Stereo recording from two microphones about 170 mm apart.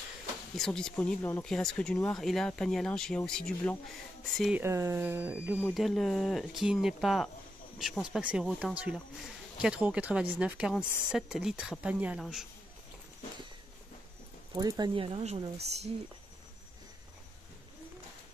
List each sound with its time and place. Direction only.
0.6 s speech: 5° left (ahead or behind)
4.6 s speech: 15° right (ahead or behind)
5.6 s speech: centre (ahead or behind)
14.5 s speech: 25° right (ahead or behind)